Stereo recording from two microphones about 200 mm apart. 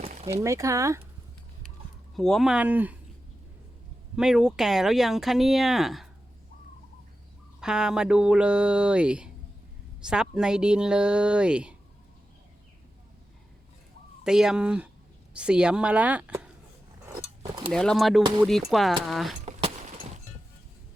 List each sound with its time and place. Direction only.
0.0 s a sound: 30° right (ahead or behind)
0.3 s speech: 15° right (ahead or behind)
2.1 s speech: centre (ahead or behind)
4.1 s speech: 5° right (ahead or behind)
7.6 s speech: 5° right (ahead or behind)
14.3 s speech: 5° right (ahead or behind)
17.1 s a sound: 15° right (ahead or behind)
17.7 s speech: 5° left (ahead or behind)